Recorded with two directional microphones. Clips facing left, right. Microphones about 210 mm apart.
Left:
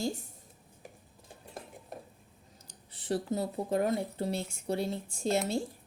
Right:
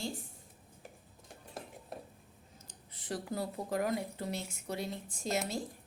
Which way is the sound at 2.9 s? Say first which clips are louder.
Left 6 dB; 30° left (ahead or behind).